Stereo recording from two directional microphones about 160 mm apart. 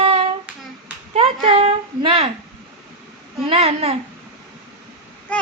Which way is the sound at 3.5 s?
40° right (ahead or behind).